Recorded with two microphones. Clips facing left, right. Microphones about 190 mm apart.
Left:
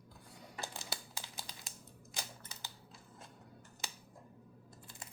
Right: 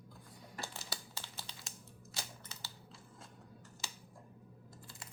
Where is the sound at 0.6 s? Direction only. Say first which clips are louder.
Left 2 dB; 15° left (ahead or behind).